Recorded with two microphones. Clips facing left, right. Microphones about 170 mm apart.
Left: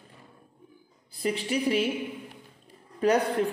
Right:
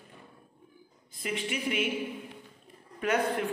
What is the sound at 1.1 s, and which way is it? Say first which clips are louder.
Speech: left 6 dB; 35° left (ahead or behind).